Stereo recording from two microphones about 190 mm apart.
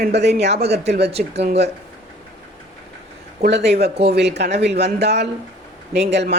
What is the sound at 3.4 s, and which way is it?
Speech, 60° right (ahead or behind).